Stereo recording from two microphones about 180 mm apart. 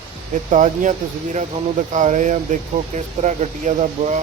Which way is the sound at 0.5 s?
45° right (ahead or behind).